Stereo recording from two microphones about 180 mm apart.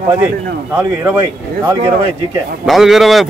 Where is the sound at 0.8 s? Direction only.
15° right (ahead or behind).